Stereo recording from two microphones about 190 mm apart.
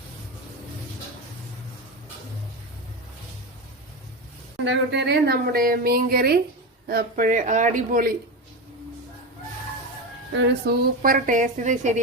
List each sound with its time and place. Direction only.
4.6 s a woman's voice: 70° right (ahead or behind); by 8.1 s 45° right (ahead or behind)
10.3 s speech: 70° right (ahead or behind)
11.0 s a woman's voice: 45° right (ahead or behind)